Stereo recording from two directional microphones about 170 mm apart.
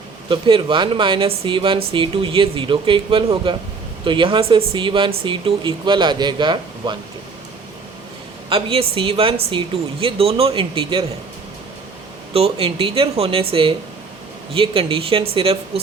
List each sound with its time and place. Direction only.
0.3 s speech: 30° right (ahead or behind)
8.4 s speech: 35° right (ahead or behind)
12.3 s speech: 35° right (ahead or behind)